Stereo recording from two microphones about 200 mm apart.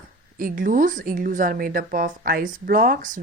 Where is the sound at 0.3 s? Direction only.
45° right (ahead or behind).